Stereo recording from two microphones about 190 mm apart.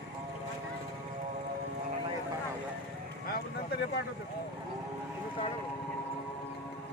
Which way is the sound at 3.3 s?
60° left (ahead or behind).